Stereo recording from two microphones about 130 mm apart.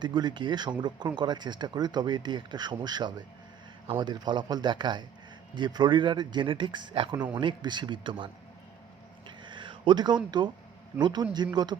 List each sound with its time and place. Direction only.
0.0 s speech: 35° right (ahead or behind)
9.4 s a sound: 40° right (ahead or behind)
11.0 s speech: 35° right (ahead or behind)